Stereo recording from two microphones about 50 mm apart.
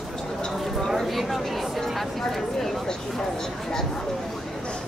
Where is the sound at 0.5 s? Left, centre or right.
Centre.